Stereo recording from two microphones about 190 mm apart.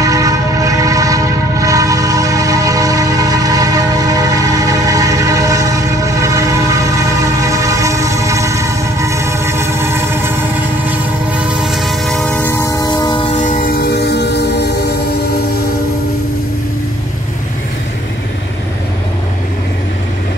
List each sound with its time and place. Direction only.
0.0 s train: 20° right (ahead or behind)
7.4 s train: 15° right (ahead or behind)
11.6 s train: centre (ahead or behind); by 13.4 s 25° left (ahead or behind)
13.4 s train: 45° left (ahead or behind); by 15.0 s 60° left (ahead or behind)